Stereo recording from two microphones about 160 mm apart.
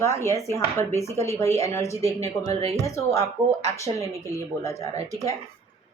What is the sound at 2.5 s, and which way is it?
Speech, 40° right (ahead or behind).